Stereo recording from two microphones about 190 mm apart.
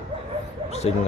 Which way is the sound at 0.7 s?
35° left (ahead or behind).